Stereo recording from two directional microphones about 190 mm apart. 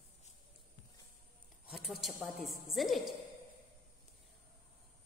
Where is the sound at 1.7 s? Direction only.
Centre (ahead or behind).